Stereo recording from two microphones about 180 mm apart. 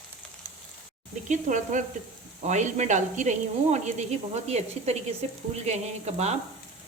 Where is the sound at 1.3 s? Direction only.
45° right (ahead or behind).